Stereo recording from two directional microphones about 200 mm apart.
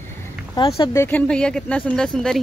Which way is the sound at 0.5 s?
25° left (ahead or behind).